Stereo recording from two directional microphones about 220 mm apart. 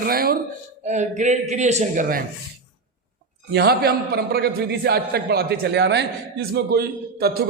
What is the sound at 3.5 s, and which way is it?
A man's voice, 45° right (ahead or behind).